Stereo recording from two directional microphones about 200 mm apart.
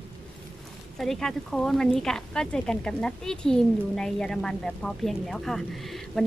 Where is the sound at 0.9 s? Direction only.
Centre (ahead or behind).